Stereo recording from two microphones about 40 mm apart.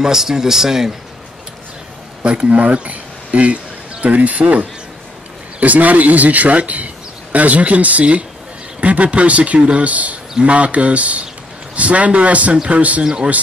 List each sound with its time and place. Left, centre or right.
0.0 s speech: centre
2.2 s speech: right
13.0 s speech: right